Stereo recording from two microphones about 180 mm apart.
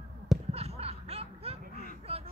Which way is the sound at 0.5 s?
35° right (ahead or behind).